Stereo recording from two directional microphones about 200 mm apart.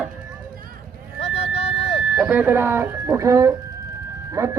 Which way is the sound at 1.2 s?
30° left (ahead or behind).